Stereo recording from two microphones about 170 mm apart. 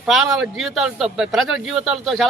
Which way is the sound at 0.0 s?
Centre (ahead or behind).